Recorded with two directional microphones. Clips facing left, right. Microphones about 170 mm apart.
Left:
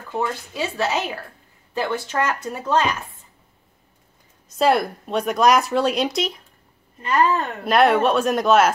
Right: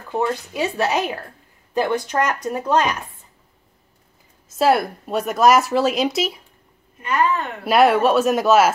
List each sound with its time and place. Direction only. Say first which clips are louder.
0.1 s speech: right 3 dB; 15° right (ahead or behind)
4.5 s speech: right 1 dB; 5° right (ahead or behind)
7.0 s a woman's voice: left 1 dB; 35° left (ahead or behind)
7.6 s speech: right 2 dB; 5° right (ahead or behind)